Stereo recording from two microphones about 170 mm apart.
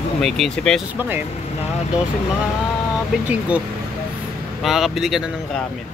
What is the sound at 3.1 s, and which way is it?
Speech, 5° right (ahead or behind).